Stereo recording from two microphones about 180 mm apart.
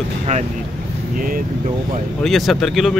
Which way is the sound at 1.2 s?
50° right (ahead or behind).